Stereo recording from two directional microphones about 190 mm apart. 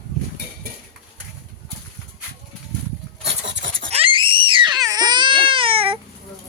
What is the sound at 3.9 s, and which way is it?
Screaming, 30° right (ahead or behind).